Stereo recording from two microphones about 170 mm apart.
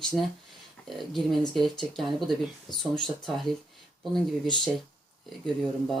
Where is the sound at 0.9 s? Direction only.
Centre (ahead or behind).